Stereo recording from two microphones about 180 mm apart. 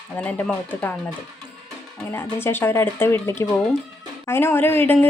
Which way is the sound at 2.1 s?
15° left (ahead or behind).